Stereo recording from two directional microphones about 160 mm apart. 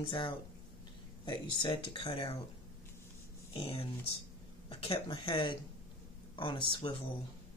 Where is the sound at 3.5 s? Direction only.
35° left (ahead or behind).